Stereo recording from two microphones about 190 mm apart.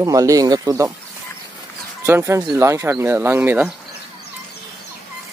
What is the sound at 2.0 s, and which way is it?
Speech, 15° right (ahead or behind).